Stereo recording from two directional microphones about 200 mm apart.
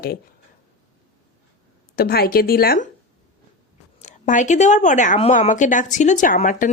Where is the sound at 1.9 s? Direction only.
50° left (ahead or behind).